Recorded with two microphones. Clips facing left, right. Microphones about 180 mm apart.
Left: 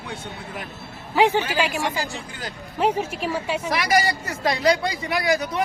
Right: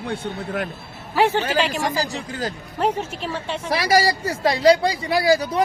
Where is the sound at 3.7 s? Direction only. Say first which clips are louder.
Right 4 dB; 30° right (ahead or behind).